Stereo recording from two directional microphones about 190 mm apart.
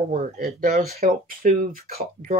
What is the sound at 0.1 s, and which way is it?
Speech, 50° right (ahead or behind).